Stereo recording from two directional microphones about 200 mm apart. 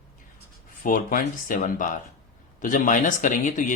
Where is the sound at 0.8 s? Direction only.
45° left (ahead or behind).